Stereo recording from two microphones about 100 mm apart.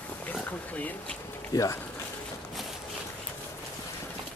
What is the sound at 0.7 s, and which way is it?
Speech, 15° left (ahead or behind).